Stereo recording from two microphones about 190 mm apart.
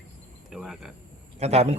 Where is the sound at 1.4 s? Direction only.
35° right (ahead or behind).